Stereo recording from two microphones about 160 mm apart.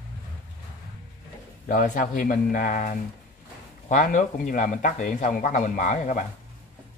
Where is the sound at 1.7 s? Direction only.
55° left (ahead or behind).